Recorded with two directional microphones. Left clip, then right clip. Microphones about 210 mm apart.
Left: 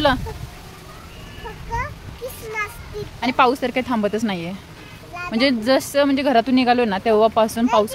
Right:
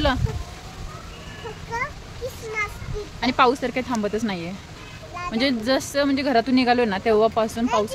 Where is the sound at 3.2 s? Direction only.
15° left (ahead or behind).